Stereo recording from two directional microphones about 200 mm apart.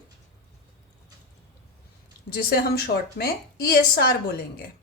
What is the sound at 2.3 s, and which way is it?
A woman's voice, 50° left (ahead or behind).